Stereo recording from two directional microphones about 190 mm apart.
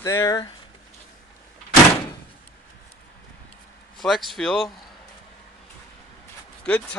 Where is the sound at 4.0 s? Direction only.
Centre (ahead or behind).